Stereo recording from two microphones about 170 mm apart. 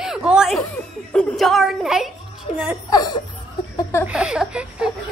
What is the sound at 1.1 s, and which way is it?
Music, centre (ahead or behind).